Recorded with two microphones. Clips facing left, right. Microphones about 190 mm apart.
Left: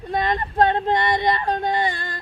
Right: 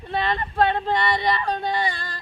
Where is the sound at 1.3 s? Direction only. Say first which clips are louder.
Left 2 dB; 50° left (ahead or behind).